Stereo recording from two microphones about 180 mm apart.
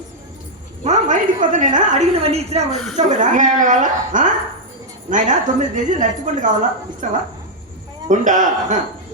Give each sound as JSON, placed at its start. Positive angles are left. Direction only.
{"t": 0.9, "sound": "a woman's voice", "side_deg": -45}